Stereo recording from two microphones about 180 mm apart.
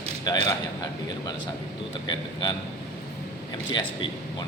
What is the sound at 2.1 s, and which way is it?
Speech, 25° left (ahead or behind).